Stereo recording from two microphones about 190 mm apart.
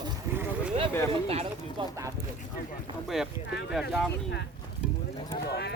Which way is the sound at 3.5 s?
60° left (ahead or behind).